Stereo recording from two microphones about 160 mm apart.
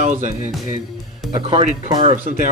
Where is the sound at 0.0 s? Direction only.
55° right (ahead or behind).